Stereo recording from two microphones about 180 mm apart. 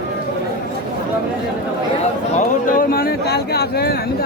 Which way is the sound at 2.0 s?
45° left (ahead or behind).